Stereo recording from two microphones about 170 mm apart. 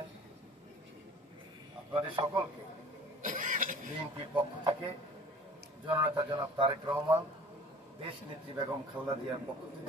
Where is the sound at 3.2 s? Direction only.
50° right (ahead or behind).